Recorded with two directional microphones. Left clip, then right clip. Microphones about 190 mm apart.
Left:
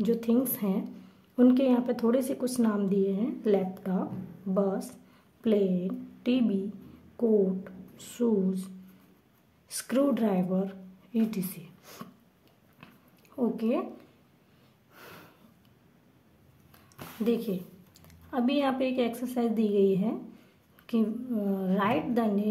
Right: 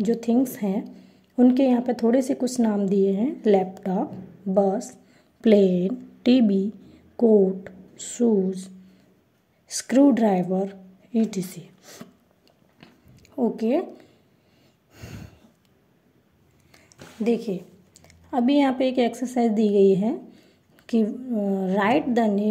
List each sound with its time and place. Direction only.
0.0 s a woman's voice: 15° right (ahead or behind)
5.4 s a woman's voice: 30° right (ahead or behind); by 12.1 s 10° right (ahead or behind)
12.8 s a sound: 20° right (ahead or behind)
17.2 s a woman's voice: 15° right (ahead or behind)